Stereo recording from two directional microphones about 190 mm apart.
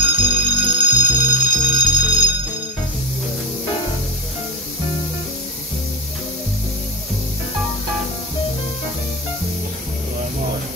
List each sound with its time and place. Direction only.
0.0 s music: 25° right (ahead or behind)